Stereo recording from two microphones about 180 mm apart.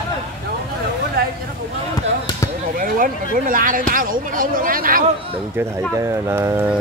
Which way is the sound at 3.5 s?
50° right (ahead or behind).